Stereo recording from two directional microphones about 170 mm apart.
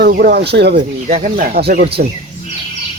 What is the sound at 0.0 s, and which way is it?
Speech, 70° right (ahead or behind).